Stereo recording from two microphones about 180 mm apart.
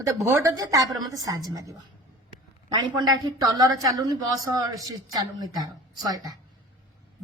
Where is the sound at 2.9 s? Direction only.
25° right (ahead or behind).